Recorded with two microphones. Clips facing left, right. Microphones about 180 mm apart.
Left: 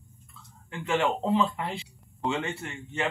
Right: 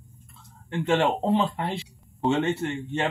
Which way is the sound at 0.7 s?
30° right (ahead or behind).